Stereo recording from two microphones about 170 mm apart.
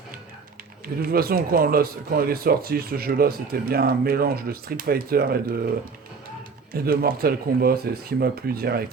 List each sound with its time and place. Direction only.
1.0 s speech: 60° right (ahead or behind)
6.7 s speech: 60° right (ahead or behind)